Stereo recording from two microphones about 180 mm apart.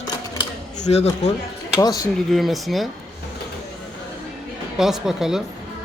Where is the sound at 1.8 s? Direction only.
20° left (ahead or behind).